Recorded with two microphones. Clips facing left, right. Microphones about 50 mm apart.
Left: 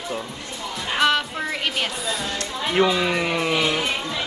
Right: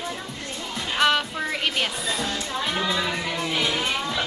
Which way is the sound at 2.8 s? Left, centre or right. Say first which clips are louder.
Left 5 dB; left.